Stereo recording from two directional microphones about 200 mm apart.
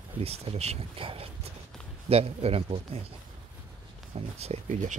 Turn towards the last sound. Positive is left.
turn(degrees=-35)  # may be behind; listen again after turning